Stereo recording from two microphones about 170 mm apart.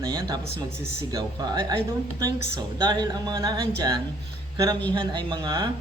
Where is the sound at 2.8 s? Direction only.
25° right (ahead or behind).